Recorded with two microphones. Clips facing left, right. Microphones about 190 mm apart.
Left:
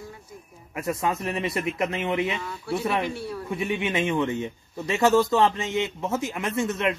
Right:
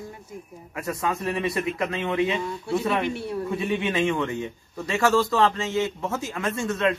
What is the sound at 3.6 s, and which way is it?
A man's voice, 20° left (ahead or behind).